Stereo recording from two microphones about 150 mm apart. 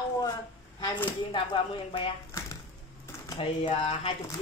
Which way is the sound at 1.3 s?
35° left (ahead or behind).